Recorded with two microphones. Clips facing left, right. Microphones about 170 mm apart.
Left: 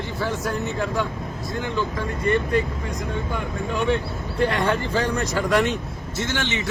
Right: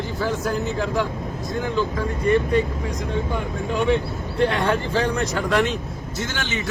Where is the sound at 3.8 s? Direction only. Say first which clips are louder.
Right 2 dB; centre (ahead or behind).